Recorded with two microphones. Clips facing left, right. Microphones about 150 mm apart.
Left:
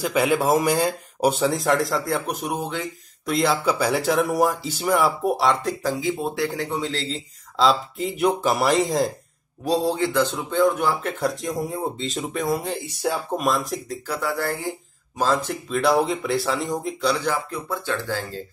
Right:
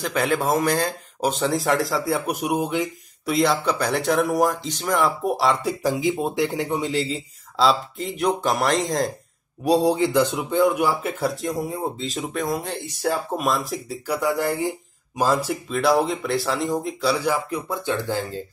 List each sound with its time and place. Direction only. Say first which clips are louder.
0.0 s a man's voice: left 2 dB; 10° left (ahead or behind); by 2.9 s 15° right (ahead or behind)
3.3 s a man's voice: right 1 dB; centre (ahead or behind)
7.5 s a man's voice: even; centre (ahead or behind)
9.7 s a man's voice: right 3 dB; 15° right (ahead or behind); by 13.9 s centre (ahead or behind)
14.0 s a man's voice: right 4 dB; 15° right (ahead or behind)